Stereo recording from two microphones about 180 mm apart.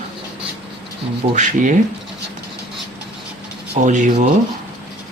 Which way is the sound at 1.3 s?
45° right (ahead or behind).